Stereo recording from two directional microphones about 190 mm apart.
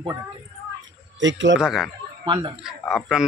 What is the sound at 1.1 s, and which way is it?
Speech, 75° right (ahead or behind).